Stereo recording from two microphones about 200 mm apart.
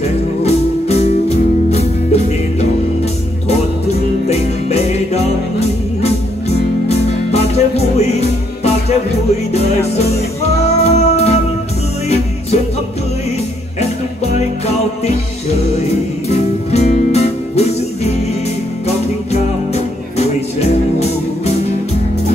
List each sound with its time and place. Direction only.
0.4 s music: 30° left (ahead or behind)
4.3 s music: 30° left (ahead or behind)
6.9 s music: 30° left (ahead or behind)
10.8 s music: 30° left (ahead or behind)
16.7 s music: 35° left (ahead or behind)
19.3 s music: 30° left (ahead or behind)